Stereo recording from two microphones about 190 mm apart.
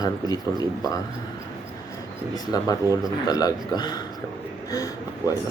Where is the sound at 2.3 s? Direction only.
20° left (ahead or behind).